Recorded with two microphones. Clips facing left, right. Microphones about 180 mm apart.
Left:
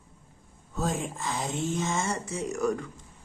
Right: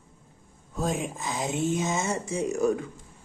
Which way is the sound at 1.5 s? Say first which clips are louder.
Right 4 dB; 20° right (ahead or behind).